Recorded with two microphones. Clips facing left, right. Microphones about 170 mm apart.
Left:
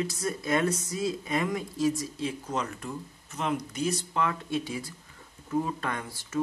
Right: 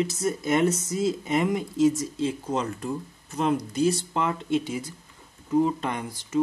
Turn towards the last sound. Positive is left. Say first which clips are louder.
# right 5 dB
turn(degrees=-20)  # may be behind; listen again after turning